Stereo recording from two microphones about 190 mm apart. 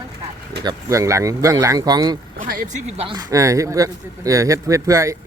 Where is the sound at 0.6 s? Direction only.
20° right (ahead or behind).